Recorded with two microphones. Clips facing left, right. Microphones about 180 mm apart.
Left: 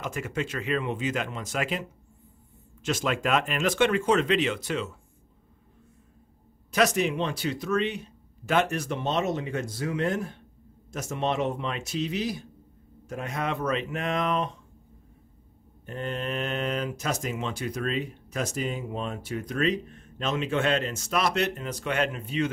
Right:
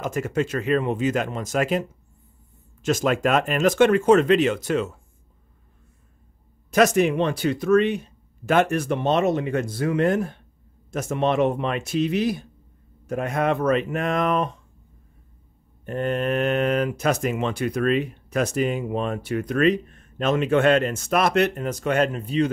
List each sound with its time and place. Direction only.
0.0 s speech: 45° right (ahead or behind)
6.7 s speech: 50° right (ahead or behind)
15.8 s speech: 60° right (ahead or behind); by 22.5 s 35° right (ahead or behind)